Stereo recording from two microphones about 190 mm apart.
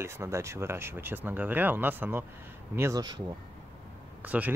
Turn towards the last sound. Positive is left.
turn(degrees=-10)  # may be behind; listen again after turning